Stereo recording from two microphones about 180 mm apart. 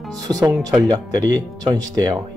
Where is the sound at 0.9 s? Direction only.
20° right (ahead or behind).